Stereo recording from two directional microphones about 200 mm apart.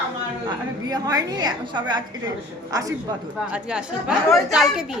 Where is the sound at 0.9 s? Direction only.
20° right (ahead or behind).